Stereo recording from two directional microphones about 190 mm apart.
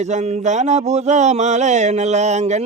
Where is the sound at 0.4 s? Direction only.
40° right (ahead or behind).